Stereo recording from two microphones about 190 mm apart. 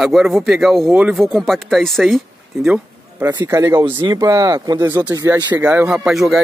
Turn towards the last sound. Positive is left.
turn(degrees=0)  # may be behind; listen again after turning